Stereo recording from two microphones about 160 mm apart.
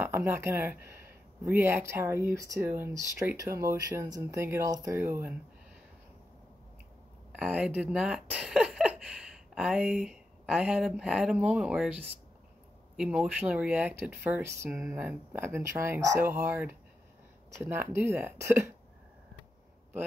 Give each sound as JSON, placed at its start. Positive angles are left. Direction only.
{"t": 0.0, "sound": "speech", "side_deg": -15}
{"t": 7.3, "sound": "speech", "side_deg": -10}